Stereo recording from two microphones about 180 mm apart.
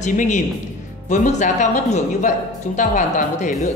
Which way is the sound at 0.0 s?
45° left (ahead or behind).